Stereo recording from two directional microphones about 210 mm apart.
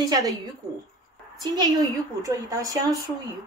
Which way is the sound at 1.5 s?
15° right (ahead or behind).